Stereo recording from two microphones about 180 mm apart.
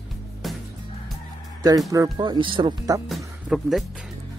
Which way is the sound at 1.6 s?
20° right (ahead or behind).